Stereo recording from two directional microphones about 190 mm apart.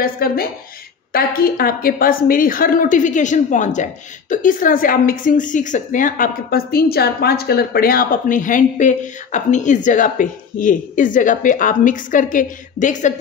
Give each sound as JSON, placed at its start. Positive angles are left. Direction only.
{"t": 0.0, "sound": "a woman's voice", "side_deg": 50}